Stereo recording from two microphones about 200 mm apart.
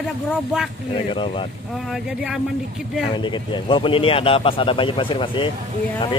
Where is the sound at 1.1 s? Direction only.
25° left (ahead or behind).